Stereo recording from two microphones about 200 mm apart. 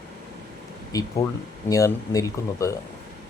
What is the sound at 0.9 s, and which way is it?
A man's voice, 20° left (ahead or behind).